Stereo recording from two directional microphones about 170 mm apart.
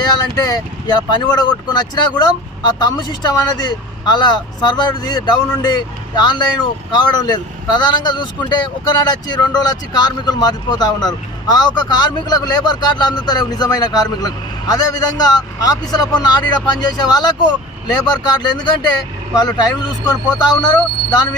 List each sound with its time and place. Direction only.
0.0 s speech: 25° left (ahead or behind)